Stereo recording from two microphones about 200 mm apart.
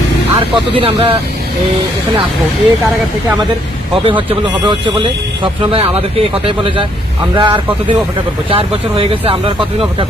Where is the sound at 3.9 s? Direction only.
25° right (ahead or behind).